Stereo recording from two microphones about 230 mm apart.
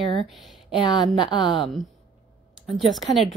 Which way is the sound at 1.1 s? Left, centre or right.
Centre.